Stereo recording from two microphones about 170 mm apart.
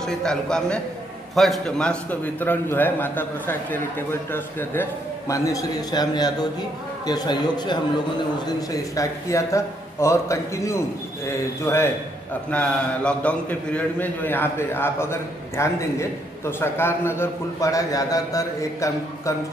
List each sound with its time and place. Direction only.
0.0 s a man's voice: 5° left (ahead or behind)